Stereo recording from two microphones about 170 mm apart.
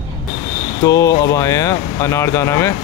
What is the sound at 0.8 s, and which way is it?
Speech, 20° left (ahead or behind).